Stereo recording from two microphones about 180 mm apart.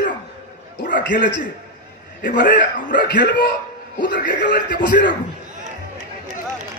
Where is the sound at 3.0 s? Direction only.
70° left (ahead or behind).